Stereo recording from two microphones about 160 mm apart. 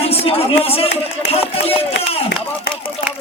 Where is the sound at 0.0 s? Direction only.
40° left (ahead or behind).